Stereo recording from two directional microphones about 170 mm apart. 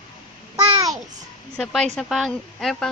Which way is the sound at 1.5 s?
5° left (ahead or behind).